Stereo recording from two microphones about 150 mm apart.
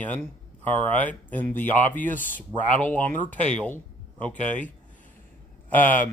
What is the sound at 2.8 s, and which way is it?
Speech, 10° left (ahead or behind).